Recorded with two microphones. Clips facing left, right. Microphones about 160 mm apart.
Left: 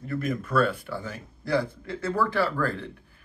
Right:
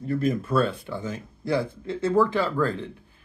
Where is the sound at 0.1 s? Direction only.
30° right (ahead or behind).